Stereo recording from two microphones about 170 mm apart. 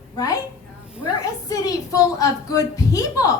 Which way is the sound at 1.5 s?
20° left (ahead or behind).